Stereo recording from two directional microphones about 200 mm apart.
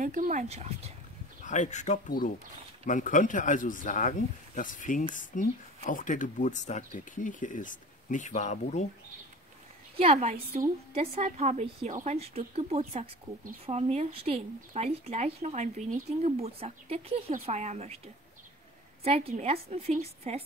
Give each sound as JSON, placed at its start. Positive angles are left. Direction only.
{"t": 0.0, "sound": "a woman's voice", "side_deg": -40}
{"t": 1.4, "sound": "speech", "side_deg": 40}
{"t": 9.9, "sound": "a woman's voice", "side_deg": -30}
{"t": 19.0, "sound": "a woman's voice", "side_deg": -30}